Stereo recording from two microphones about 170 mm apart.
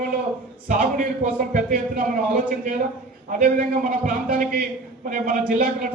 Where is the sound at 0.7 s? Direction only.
50° right (ahead or behind).